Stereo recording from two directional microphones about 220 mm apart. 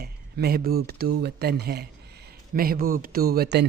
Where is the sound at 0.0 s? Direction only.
45° right (ahead or behind).